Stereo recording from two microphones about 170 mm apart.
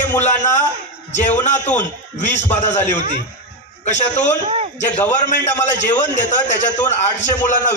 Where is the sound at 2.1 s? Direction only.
45° left (ahead or behind).